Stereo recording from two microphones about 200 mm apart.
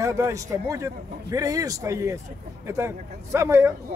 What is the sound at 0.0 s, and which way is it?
Speech, 15° right (ahead or behind).